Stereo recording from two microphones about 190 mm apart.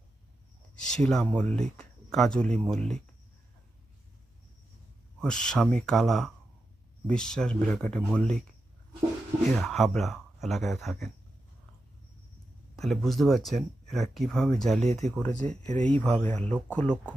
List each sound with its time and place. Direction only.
0.8 s speech: 5° left (ahead or behind)
5.2 s speech: 5° left (ahead or behind)
9.6 s speech: centre (ahead or behind)
12.7 s speech: centre (ahead or behind)
15.6 s speech: 40° right (ahead or behind)
16.0 s speech: 10° left (ahead or behind)